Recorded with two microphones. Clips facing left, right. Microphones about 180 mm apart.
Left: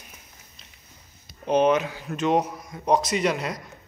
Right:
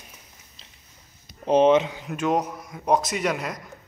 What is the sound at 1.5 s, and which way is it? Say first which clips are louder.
Speech: right 3 dB; 25° right (ahead or behind).